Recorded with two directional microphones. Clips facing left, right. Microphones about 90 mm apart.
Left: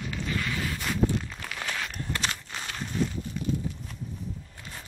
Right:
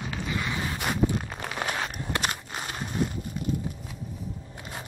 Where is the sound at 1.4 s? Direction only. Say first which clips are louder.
Right 5 dB; 30° right (ahead or behind).